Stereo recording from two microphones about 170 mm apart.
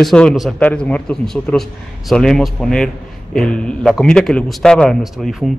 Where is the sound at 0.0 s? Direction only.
5° left (ahead or behind).